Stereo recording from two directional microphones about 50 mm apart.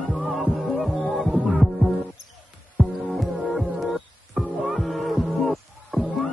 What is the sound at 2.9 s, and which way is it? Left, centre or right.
Music, centre.